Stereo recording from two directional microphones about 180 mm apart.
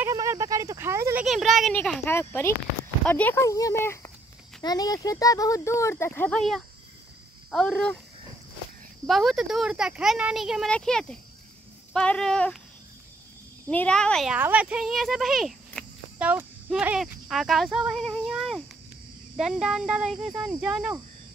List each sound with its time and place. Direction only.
0.0 s a sound: 15° right (ahead or behind)
1.2 s speech: centre (ahead or behind)
9.0 s speech: centre (ahead or behind)
13.7 s speech: 5° left (ahead or behind)